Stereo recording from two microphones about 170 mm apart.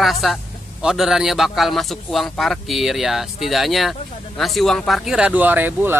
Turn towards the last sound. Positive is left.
turn(degrees=-10)  # may be behind; listen again after turning